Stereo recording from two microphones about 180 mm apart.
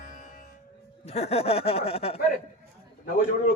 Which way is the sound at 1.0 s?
35° left (ahead or behind).